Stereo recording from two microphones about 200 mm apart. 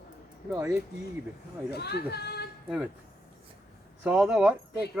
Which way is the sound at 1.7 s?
55° left (ahead or behind).